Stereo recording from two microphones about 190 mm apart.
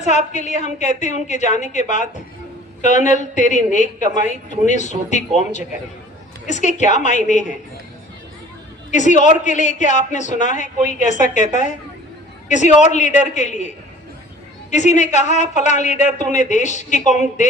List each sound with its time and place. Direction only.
0.0 s a man's voice: 40° left (ahead or behind)
6.5 s a man's voice: 40° left (ahead or behind)
8.9 s a man's voice: 40° left (ahead or behind)
14.7 s a man's voice: 40° left (ahead or behind)